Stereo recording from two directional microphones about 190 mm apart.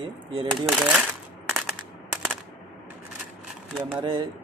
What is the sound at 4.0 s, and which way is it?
Speech, 25° right (ahead or behind).